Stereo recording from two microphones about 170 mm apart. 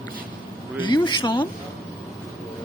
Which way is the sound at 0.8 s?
25° left (ahead or behind).